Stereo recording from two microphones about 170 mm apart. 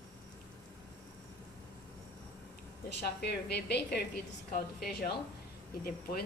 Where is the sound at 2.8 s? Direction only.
75° left (ahead or behind).